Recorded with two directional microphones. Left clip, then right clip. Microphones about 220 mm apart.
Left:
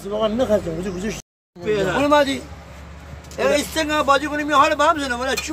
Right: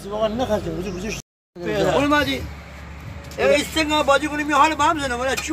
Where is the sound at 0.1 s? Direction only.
40° left (ahead or behind).